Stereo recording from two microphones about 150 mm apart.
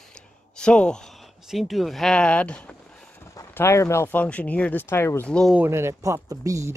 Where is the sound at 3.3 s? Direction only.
15° left (ahead or behind).